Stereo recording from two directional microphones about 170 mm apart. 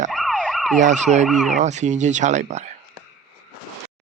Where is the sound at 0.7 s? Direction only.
45° right (ahead or behind).